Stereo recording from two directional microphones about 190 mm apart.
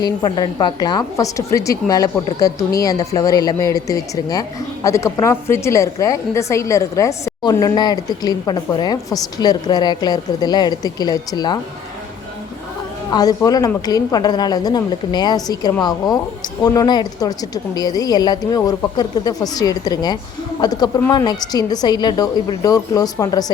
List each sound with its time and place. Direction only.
0.0 s a woman's voice: 20° left (ahead or behind)
13.1 s a woman's voice: 20° left (ahead or behind)